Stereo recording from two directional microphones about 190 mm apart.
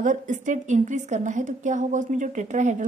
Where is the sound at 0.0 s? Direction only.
40° right (ahead or behind).